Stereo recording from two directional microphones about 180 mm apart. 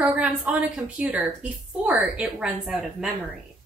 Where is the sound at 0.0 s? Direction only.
5° right (ahead or behind).